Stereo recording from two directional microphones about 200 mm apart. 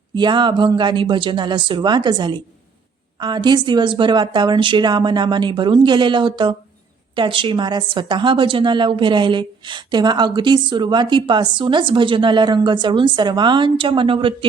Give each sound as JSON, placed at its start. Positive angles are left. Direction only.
{"t": 0.2, "sound": "a woman's voice", "side_deg": -25}